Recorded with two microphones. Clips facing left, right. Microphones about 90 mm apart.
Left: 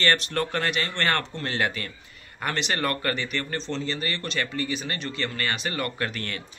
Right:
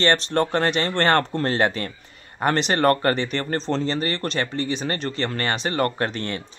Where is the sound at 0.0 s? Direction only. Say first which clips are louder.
Right 5 dB; 30° right (ahead or behind).